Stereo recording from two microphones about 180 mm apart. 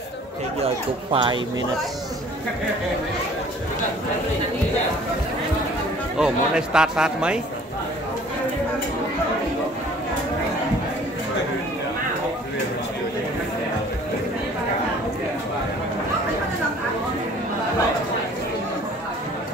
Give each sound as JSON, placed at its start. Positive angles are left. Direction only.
{"t": 1.1, "sound": "speech", "side_deg": -25}
{"t": 6.1, "sound": "speech", "side_deg": -5}